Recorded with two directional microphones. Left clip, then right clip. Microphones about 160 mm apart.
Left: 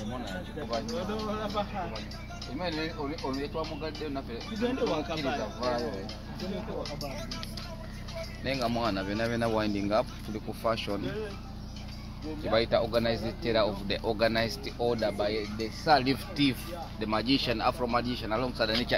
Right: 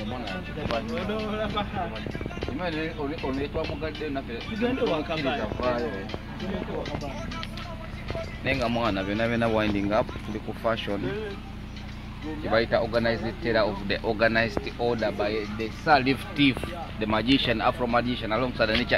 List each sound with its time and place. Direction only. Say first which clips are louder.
0.7 s speech: right 2 dB; 15° right (ahead or behind)
4.6 s speech: right 4 dB; 10° right (ahead or behind); by 5.9 s 5° left (ahead or behind)
8.5 s speech: right 4 dB; 15° right (ahead or behind)
9.8 s speech: right 3 dB; centre (ahead or behind)
12.4 s speech: right 3 dB; 10° left (ahead or behind)
16.4 s speech: right 6 dB; 20° right (ahead or behind)
17.0 s speech: right 5 dB; 40° right (ahead or behind)